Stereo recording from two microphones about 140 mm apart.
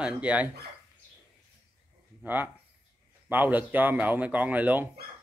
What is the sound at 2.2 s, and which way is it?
Speech, 15° right (ahead or behind).